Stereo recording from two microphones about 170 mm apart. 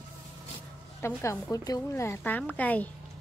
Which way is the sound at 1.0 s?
15° left (ahead or behind).